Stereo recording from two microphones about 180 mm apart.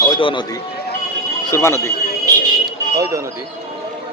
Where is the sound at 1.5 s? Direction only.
15° left (ahead or behind).